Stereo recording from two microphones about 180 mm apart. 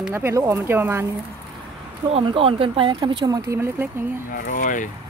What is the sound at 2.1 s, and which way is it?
Speech, 30° right (ahead or behind).